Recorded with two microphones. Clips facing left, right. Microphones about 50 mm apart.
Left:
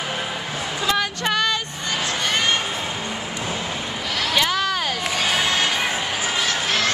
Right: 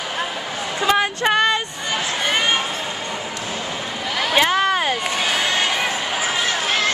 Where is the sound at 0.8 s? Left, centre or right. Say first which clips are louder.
Right 5 dB; right.